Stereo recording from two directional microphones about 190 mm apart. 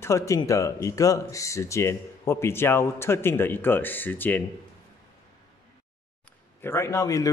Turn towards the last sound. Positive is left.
turn(degrees=15)  # may be behind; listen again after turning